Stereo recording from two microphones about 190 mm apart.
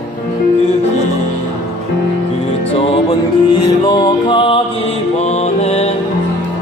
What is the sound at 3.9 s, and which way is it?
Music, 25° left (ahead or behind).